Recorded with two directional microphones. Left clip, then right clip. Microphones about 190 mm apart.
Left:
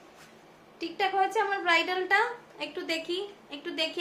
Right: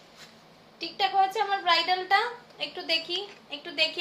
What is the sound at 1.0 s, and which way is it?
A woman's voice, 20° left (ahead or behind).